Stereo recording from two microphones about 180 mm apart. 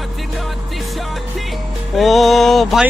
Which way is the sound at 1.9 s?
Centre (ahead or behind).